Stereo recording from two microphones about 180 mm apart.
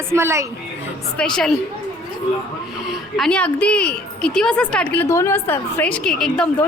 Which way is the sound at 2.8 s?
Centre (ahead or behind).